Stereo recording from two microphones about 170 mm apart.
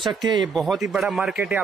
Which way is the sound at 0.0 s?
25° right (ahead or behind).